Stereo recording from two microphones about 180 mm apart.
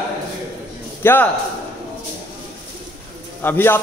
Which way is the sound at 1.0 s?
10° left (ahead or behind).